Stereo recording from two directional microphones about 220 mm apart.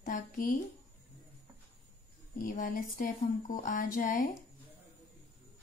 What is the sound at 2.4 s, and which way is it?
Speech, 35° left (ahead or behind).